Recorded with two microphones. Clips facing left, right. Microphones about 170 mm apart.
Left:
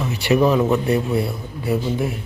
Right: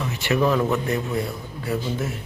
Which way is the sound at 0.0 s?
15° left (ahead or behind).